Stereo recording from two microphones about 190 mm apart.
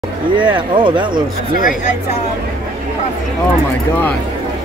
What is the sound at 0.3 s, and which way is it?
Speech, 25° right (ahead or behind).